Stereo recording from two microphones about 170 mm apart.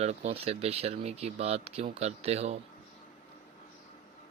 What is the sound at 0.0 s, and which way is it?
Speech, 40° right (ahead or behind).